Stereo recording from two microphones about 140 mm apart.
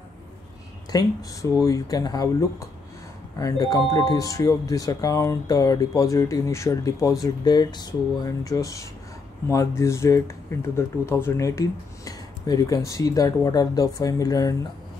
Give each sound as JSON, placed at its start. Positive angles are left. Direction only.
{"t": 0.9, "sound": "speech", "side_deg": 25}
{"t": 3.3, "sound": "speech", "side_deg": 25}